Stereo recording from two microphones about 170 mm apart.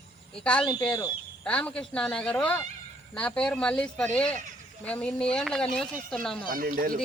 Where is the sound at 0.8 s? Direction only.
20° left (ahead or behind).